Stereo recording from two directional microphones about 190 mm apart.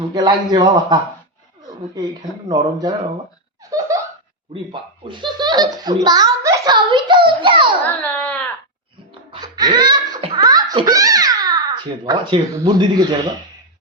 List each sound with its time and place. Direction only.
0.1 s a child's voice: 20° right (ahead or behind)
2.5 s a child's voice: 20° right (ahead or behind)
3.7 s laughter: 20° right (ahead or behind)
4.5 s a child's voice: 25° right (ahead or behind)
7.9 s dog: 10° left (ahead or behind)
9.3 s laughter: 20° right (ahead or behind)
10.3 s a child's voice: 20° right (ahead or behind)